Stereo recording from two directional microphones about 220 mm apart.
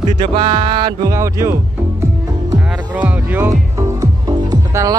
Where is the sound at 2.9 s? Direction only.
5° right (ahead or behind).